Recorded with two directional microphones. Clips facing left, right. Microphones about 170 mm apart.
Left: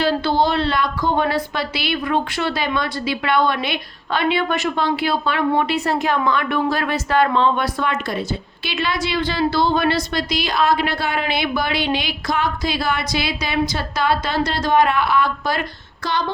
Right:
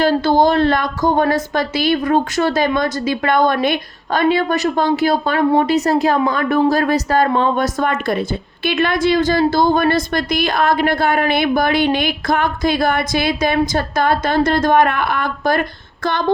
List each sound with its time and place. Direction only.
0.0 s speech: 45° right (ahead or behind)